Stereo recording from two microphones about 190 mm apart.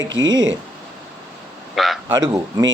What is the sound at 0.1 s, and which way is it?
Speech, 80° right.